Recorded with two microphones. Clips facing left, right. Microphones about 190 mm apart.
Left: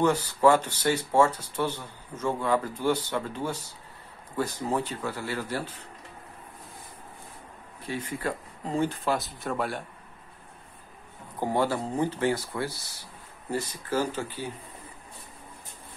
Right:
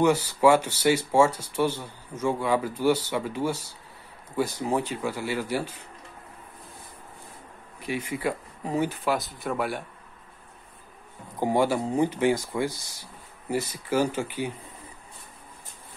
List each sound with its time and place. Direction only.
0.0 s speech: 10° right (ahead or behind)
7.8 s speech: 15° right (ahead or behind)
11.3 s speech: 15° right (ahead or behind)